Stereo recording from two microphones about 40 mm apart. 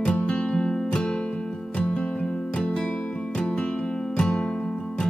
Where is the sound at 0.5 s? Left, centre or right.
Left.